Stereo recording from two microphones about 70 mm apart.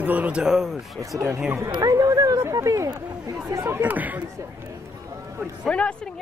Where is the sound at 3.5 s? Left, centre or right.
Right.